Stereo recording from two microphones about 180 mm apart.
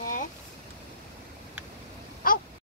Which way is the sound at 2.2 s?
50° left (ahead or behind).